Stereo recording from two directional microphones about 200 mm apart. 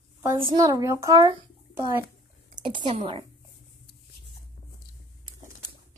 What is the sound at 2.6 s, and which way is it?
Speech, 25° right (ahead or behind).